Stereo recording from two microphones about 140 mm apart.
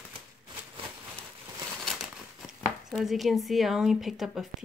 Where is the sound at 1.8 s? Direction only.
Centre (ahead or behind).